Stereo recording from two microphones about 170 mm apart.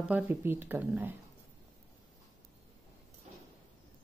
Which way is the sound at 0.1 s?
10° right (ahead or behind).